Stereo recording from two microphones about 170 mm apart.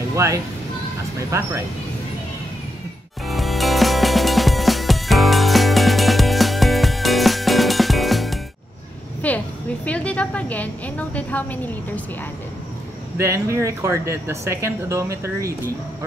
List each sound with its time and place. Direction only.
0.1 s speech: 15° right (ahead or behind)
3.3 s music: centre (ahead or behind)
9.2 s a sound: 10° left (ahead or behind)
9.8 s a woman's voice: 10° left (ahead or behind)
13.2 s speech: 15° right (ahead or behind)